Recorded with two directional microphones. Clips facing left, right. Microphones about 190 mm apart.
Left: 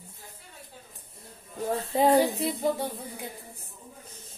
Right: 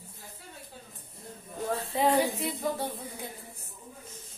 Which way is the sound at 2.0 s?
40° left (ahead or behind).